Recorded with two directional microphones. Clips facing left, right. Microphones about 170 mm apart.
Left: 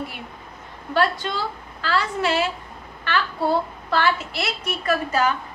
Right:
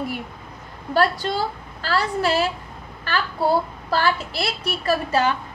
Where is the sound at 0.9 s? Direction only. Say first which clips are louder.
Right 2 dB; 40° right (ahead or behind).